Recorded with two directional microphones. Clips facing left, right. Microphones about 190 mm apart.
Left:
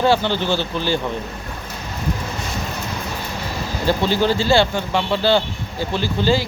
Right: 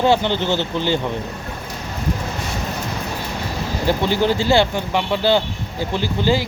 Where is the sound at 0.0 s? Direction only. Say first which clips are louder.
Right 1 dB; 20° right (ahead or behind).